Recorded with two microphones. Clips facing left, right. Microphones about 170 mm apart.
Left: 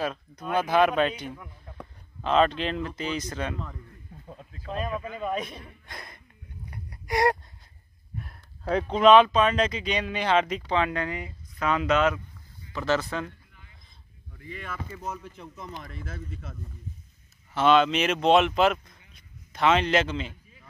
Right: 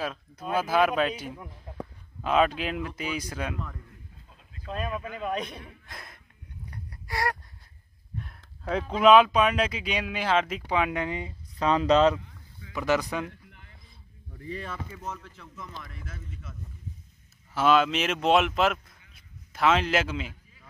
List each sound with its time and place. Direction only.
0.0 s speech: 5° right (ahead or behind)
1.8 s a sound: 10° right (ahead or behind)
3.0 s speech: 10° right (ahead or behind)
4.7 s speech: centre (ahead or behind)
6.7 s a sound: 15° left (ahead or behind)
8.6 s speech: 5° right (ahead or behind)
10.7 s speech: 15° right (ahead or behind)
11.5 s speech: 35° right (ahead or behind)
12.7 s speech: 15° right (ahead or behind)
14.4 s speech: 35° right (ahead or behind)
15.0 s speech: 15° left (ahead or behind); by 16.2 s 30° left (ahead or behind)
17.6 s speech: 5° right (ahead or behind)